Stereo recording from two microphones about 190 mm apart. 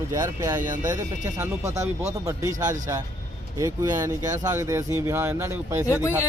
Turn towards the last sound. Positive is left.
turn(degrees=15)  # may be behind; listen again after turning